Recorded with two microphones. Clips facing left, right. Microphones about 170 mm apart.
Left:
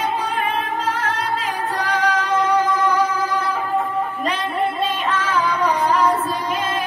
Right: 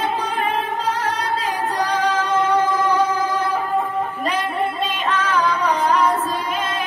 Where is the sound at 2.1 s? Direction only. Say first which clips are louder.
Left 1 dB; 25° right (ahead or behind).